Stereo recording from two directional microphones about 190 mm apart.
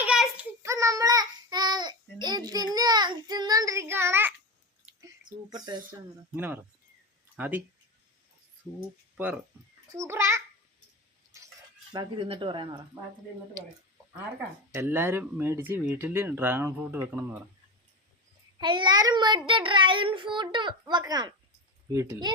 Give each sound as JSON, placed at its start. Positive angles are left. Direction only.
{"t": 0.0, "sound": "child singing", "side_deg": -5}
{"t": 0.6, "sound": "child singing", "side_deg": -15}
{"t": 4.9, "sound": "a sound", "side_deg": -20}
{"t": 6.3, "sound": "speech", "side_deg": -10}
{"t": 9.1, "sound": "a child's voice", "side_deg": -10}
{"t": 11.9, "sound": "a child's voice", "side_deg": -25}
{"t": 14.7, "sound": "speech", "side_deg": -10}
{"t": 18.6, "sound": "a child's voice", "side_deg": -25}